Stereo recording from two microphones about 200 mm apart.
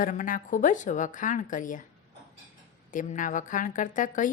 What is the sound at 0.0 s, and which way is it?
A woman's voice, 40° left (ahead or behind).